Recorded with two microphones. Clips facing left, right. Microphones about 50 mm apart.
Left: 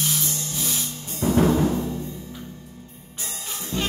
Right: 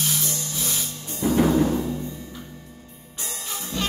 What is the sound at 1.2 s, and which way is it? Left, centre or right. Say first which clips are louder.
Timpani: even; centre.